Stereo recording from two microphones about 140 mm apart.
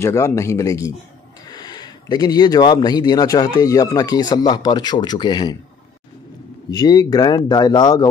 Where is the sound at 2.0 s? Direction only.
30° left (ahead or behind).